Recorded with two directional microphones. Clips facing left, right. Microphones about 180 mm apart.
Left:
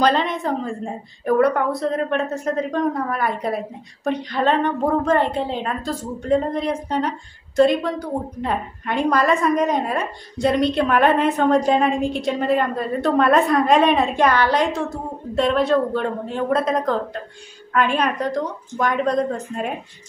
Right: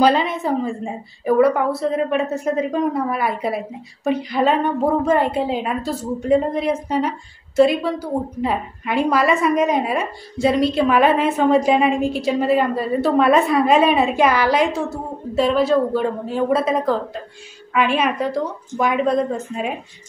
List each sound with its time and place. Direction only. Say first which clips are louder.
0.0 s a woman's voice: right 2 dB; 5° right (ahead or behind)